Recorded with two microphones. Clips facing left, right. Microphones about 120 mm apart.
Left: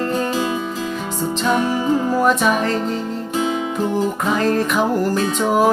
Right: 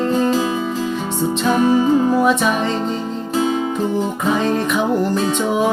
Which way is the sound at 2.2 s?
Centre (ahead or behind).